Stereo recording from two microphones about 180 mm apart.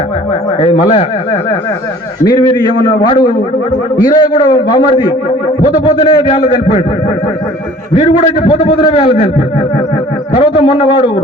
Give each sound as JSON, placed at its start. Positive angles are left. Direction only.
{"t": 0.6, "sound": "a man's voice", "side_deg": 30}
{"t": 2.2, "sound": "a man's voice", "side_deg": 25}
{"t": 8.2, "sound": "a man's voice", "side_deg": 30}
{"t": 10.3, "sound": "a man's voice", "side_deg": 30}